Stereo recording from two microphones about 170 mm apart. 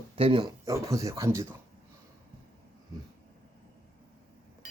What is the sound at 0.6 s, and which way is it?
Speech, 20° right (ahead or behind).